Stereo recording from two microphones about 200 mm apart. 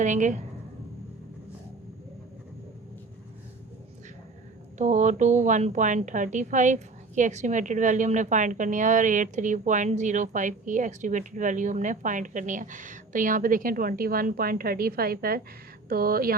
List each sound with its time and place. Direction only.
0.0 s a woman's voice: 40° right (ahead or behind)
4.8 s a woman's voice: 35° right (ahead or behind)